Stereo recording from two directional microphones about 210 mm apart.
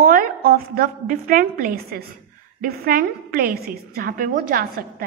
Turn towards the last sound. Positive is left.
turn(degrees=-40)  # may be behind; listen again after turning